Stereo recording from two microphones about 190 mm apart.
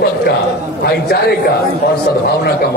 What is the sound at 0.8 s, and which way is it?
Speech, 55° left (ahead or behind).